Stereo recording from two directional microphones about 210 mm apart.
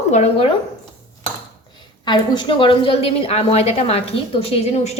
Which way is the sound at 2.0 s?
20° left (ahead or behind).